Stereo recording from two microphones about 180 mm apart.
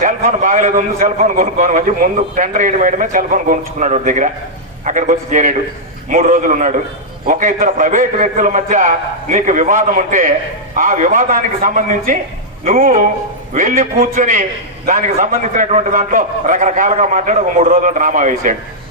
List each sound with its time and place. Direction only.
0.0 s a man's voice: 45° right (ahead or behind)